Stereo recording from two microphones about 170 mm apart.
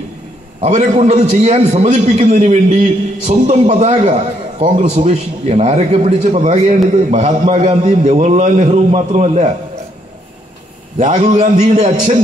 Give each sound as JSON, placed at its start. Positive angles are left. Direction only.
{"t": 0.6, "sound": "a man's voice", "side_deg": -40}
{"t": 11.0, "sound": "a man's voice", "side_deg": -45}